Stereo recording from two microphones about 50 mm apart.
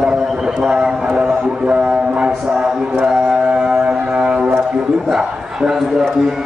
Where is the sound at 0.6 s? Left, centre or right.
Centre.